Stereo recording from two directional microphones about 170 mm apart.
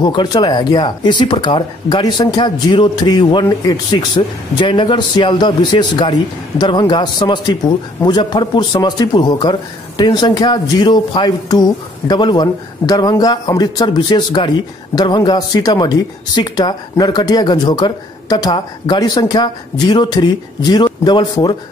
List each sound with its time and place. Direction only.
0.0 s a man's voice: 25° left (ahead or behind)